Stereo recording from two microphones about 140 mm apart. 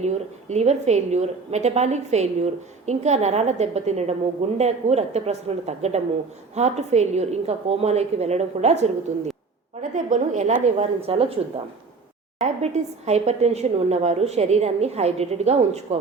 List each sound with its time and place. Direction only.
0.0 s a woman's voice: 55° right (ahead or behind)
12.4 s a woman's voice: 50° right (ahead or behind)